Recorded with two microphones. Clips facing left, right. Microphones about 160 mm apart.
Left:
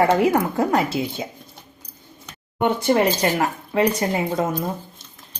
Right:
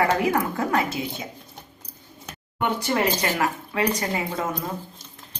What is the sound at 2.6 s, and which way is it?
Speech, 25° left (ahead or behind).